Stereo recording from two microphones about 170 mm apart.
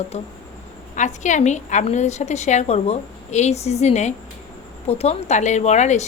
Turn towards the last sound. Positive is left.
turn(degrees=40)  # may be behind; listen again after turning